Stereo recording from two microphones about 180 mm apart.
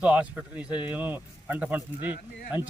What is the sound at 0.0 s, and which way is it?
Speech, 5° right (ahead or behind).